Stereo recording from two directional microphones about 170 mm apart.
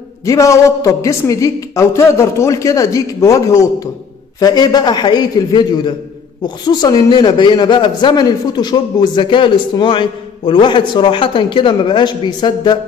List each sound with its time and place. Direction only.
0.2 s a man's voice: 20° left (ahead or behind)